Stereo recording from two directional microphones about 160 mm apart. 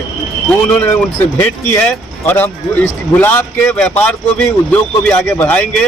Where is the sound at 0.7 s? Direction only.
10° left (ahead or behind).